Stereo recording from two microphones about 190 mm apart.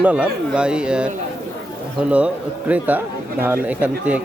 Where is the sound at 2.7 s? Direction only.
10° right (ahead or behind).